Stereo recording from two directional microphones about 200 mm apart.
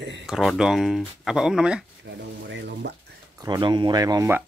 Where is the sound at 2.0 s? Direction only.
60° right (ahead or behind).